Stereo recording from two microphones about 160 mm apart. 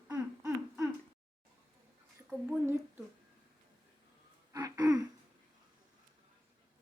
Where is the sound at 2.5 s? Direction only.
15° right (ahead or behind).